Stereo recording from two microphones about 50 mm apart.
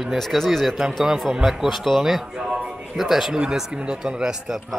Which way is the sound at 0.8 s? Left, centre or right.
Centre.